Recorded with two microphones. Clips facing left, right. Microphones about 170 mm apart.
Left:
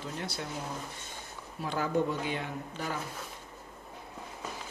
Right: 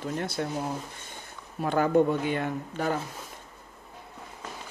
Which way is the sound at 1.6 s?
55° right (ahead or behind).